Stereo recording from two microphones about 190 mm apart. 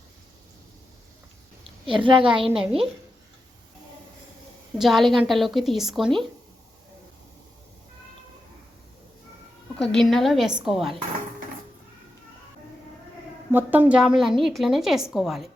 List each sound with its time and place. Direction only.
2.0 s a woman's voice: 25° right (ahead or behind)
2.6 s a woman's voice: centre (ahead or behind)
4.8 s a woman's voice: centre (ahead or behind)
9.7 s a woman's voice: centre (ahead or behind)
13.5 s a woman's voice: 10° right (ahead or behind)